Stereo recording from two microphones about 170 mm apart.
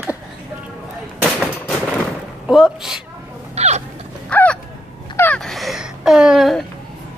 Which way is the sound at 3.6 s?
40° right (ahead or behind).